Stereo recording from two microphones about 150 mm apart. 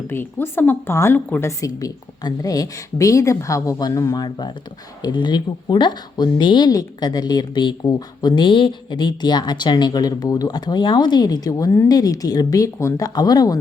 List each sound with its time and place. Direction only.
0.1 s speech: 15° left (ahead or behind)